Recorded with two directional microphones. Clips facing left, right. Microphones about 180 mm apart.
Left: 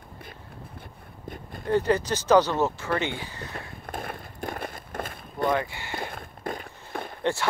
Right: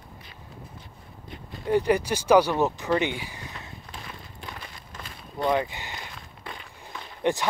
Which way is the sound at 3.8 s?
55° left (ahead or behind).